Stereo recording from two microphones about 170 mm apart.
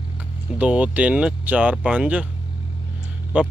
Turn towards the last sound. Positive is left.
turn(degrees=-5)  # may be behind; listen again after turning